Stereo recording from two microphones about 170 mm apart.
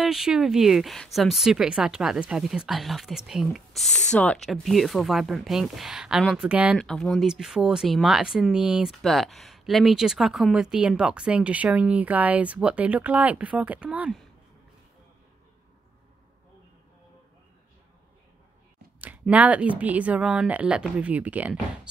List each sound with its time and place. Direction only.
0.0 s speech: centre (ahead or behind)
6.8 s speech: 5° left (ahead or behind)
18.9 s speech: 10° right (ahead or behind)